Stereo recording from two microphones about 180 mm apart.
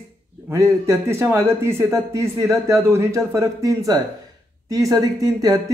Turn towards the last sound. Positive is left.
turn(degrees=-20)  # may be behind; listen again after turning